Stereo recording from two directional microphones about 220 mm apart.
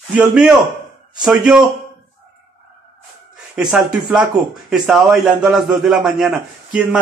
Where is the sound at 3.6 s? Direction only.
5° right (ahead or behind).